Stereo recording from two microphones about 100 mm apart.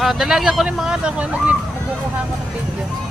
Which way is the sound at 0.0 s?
5° right (ahead or behind).